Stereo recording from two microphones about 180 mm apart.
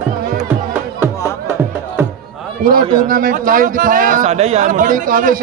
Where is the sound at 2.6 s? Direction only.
50° right (ahead or behind).